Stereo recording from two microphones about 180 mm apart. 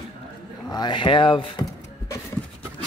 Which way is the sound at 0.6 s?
25° left (ahead or behind).